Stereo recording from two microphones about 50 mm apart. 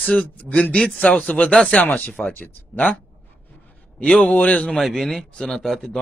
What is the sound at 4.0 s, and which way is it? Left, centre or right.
Speech, left.